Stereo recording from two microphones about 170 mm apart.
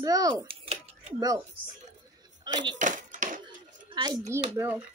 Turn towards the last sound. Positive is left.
turn(degrees=-10)  # may be behind; listen again after turning